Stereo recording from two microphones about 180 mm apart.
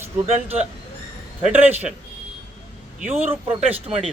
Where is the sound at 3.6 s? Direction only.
35° right (ahead or behind).